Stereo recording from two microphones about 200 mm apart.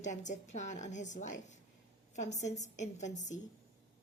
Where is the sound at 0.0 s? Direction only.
35° left (ahead or behind).